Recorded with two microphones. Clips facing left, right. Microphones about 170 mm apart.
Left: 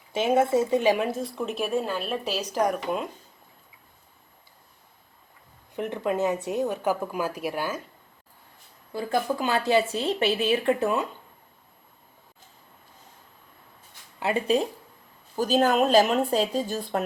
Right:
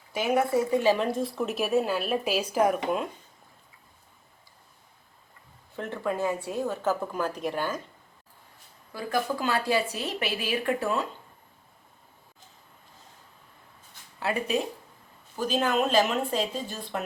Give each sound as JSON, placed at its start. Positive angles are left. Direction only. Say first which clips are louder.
{"t": 0.1, "sound": "speech", "louder": "left 3 dB", "side_deg": 25}
{"t": 5.7, "sound": "a woman's voice", "louder": "left 3 dB", "side_deg": 15}
{"t": 8.9, "sound": "speech", "louder": "left 3 dB", "side_deg": 25}
{"t": 14.2, "sound": "speech", "louder": "left 4 dB", "side_deg": 25}